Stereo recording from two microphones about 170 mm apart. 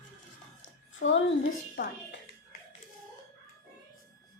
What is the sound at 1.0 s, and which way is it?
Speech, 75° left (ahead or behind).